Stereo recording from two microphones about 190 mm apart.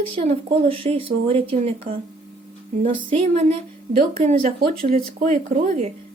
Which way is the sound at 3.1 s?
30° right (ahead or behind).